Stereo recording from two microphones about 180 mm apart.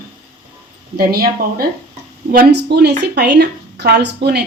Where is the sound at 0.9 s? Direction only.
55° right (ahead or behind).